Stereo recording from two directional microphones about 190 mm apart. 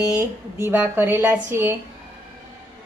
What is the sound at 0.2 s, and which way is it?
A woman's voice, 10° right (ahead or behind).